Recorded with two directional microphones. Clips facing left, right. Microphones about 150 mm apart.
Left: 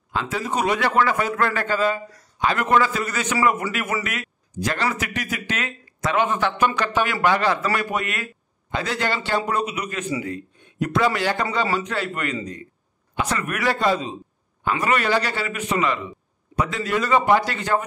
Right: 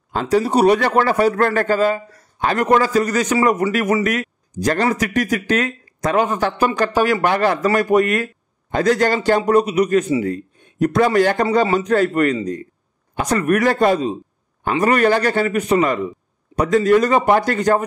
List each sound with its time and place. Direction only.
0.1 s a man's voice: 40° right (ahead or behind)